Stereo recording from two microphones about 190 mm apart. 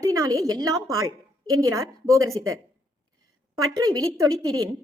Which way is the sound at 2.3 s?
90° right.